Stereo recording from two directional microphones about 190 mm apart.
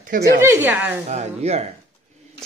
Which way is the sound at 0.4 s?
10° right (ahead or behind).